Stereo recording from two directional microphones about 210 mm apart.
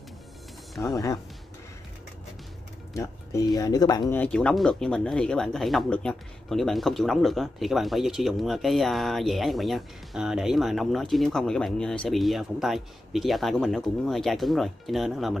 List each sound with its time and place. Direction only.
0.9 s speech: 20° left (ahead or behind)
3.0 s speech: 20° left (ahead or behind); by 15.3 s centre (ahead or behind)